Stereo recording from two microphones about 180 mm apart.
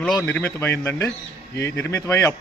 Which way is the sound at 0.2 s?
10° left (ahead or behind).